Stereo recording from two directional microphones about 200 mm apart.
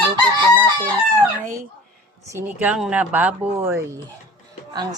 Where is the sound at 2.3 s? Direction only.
10° right (ahead or behind).